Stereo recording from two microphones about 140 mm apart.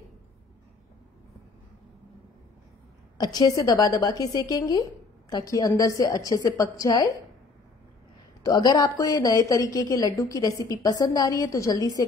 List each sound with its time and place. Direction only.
3.3 s speech: 25° left (ahead or behind)
8.5 s speech: 30° left (ahead or behind)